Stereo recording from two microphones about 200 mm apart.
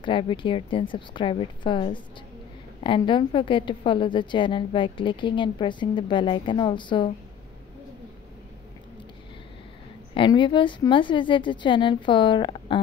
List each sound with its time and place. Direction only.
0.0 s a woman's voice: 25° left (ahead or behind)
10.1 s a woman's voice: 25° left (ahead or behind)